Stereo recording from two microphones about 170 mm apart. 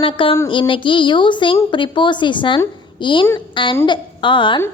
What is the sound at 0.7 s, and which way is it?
A woman's voice, 30° left (ahead or behind).